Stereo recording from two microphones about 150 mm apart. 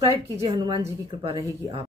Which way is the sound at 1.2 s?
35° right (ahead or behind).